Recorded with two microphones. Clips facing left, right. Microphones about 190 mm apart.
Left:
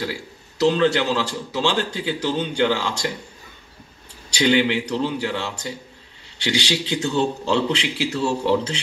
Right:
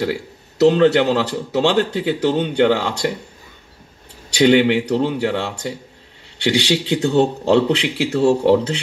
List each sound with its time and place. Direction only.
0.0 s speech: 60° right (ahead or behind)
4.3 s speech: 60° right (ahead or behind)